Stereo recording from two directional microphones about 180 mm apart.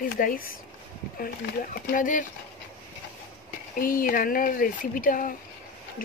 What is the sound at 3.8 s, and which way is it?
Speech, 50° left (ahead or behind).